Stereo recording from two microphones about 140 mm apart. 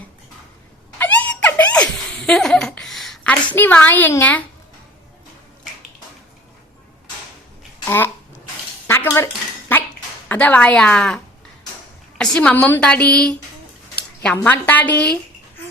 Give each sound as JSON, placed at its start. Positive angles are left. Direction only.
{"t": 0.9, "sound": "laughter", "side_deg": 10}
{"t": 3.5, "sound": "a woman's voice", "side_deg": 15}
{"t": 7.9, "sound": "a woman's voice", "side_deg": 15}
{"t": 8.9, "sound": "dishes", "side_deg": 20}
{"t": 10.2, "sound": "a woman's voice", "side_deg": 10}
{"t": 14.3, "sound": "a woman's voice", "side_deg": 15}